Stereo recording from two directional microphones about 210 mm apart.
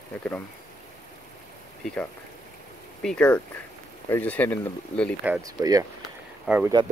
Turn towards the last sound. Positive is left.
turn(degrees=-5)  # may be behind; listen again after turning